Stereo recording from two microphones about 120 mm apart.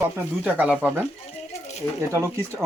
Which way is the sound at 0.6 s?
10° right (ahead or behind).